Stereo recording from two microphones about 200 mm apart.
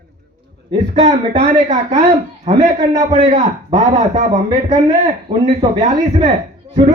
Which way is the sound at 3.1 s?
35° right (ahead or behind).